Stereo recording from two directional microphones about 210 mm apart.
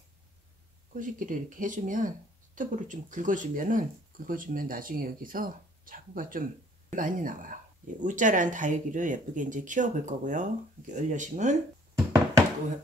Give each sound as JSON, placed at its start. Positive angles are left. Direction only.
{"t": 0.9, "sound": "speech", "side_deg": -40}
{"t": 11.9, "sound": "knock", "side_deg": -15}